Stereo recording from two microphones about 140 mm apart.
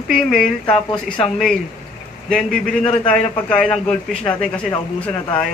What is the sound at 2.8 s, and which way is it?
Speech, 45° left (ahead or behind).